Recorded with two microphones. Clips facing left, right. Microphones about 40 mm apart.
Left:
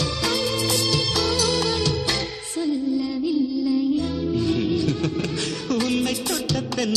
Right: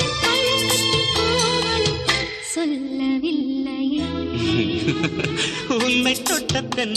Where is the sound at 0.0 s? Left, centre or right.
Right.